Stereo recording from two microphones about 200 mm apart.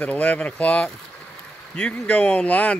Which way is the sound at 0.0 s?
5° left (ahead or behind).